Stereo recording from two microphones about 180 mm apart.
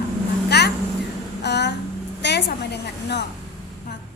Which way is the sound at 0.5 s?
65° left (ahead or behind).